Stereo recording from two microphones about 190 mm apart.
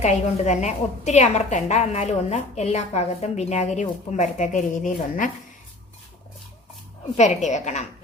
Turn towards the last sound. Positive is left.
turn(degrees=40)  # may be behind; listen again after turning